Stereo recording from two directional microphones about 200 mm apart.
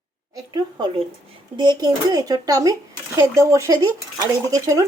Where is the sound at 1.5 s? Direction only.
20° right (ahead or behind).